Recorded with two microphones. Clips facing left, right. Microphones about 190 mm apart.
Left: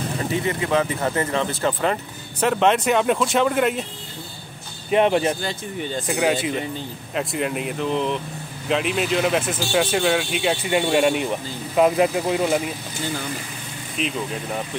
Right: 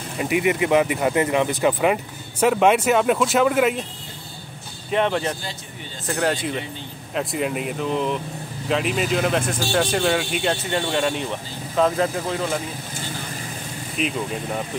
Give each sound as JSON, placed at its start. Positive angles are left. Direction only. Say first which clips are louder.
{"t": 0.2, "sound": "speech", "louder": "right 5 dB", "side_deg": -15}
{"t": 4.9, "sound": "speech", "louder": "left 4 dB", "side_deg": 15}
{"t": 14.0, "sound": "speech", "louder": "right 1 dB", "side_deg": 0}